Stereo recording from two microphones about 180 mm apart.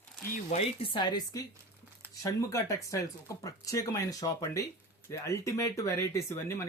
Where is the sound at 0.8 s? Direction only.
25° left (ahead or behind).